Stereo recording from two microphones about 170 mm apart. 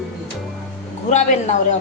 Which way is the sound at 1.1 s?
45° left (ahead or behind).